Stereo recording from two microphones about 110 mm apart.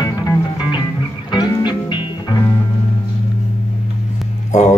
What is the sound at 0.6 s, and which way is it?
Music, 50° left (ahead or behind).